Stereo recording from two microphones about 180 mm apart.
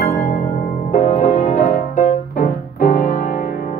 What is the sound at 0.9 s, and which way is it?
Music, 35° left (ahead or behind).